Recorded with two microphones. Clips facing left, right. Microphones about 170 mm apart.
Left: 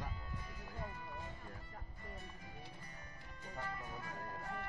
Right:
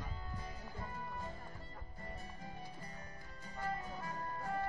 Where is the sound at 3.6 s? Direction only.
30° right (ahead or behind).